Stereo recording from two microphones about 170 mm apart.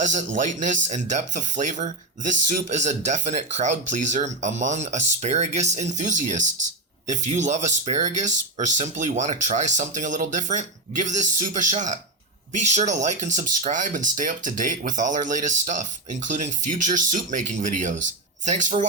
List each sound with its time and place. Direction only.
0.0 s speech: 45° right (ahead or behind)